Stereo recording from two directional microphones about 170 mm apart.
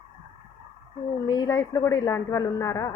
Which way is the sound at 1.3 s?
25° left (ahead or behind).